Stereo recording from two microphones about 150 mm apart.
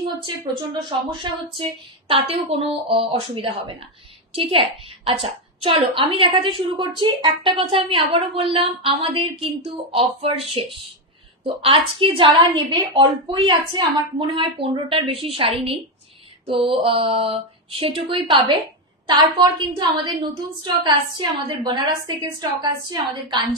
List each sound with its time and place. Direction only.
0.0 s a woman's voice: 35° right (ahead or behind)